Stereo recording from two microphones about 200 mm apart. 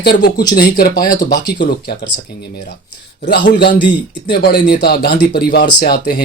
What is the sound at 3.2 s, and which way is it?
Speech, 50° left (ahead or behind).